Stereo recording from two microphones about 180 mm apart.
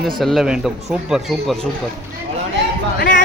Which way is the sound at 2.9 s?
50° left (ahead or behind).